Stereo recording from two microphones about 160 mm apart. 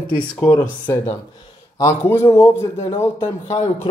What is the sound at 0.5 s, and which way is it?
Speech, 15° left (ahead or behind).